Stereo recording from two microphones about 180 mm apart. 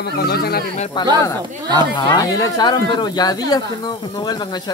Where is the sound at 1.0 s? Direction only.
25° left (ahead or behind).